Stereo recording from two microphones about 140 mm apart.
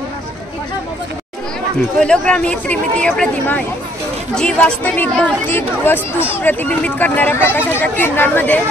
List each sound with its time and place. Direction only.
2.0 s a woman's voice: 5° left (ahead or behind)